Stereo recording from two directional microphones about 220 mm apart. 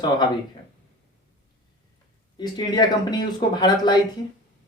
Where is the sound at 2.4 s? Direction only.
20° left (ahead or behind).